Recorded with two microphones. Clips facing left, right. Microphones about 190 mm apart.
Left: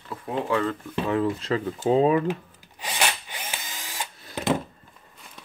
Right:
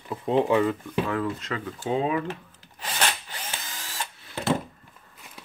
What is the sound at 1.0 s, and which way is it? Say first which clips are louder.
Speech: left 4 dB; 25° left (ahead or behind).